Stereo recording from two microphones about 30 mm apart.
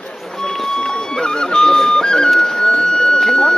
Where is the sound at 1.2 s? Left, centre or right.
Left.